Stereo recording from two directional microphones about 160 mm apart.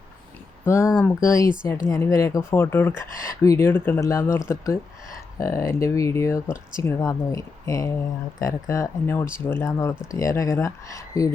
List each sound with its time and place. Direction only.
0.6 s speech: 15° left (ahead or behind)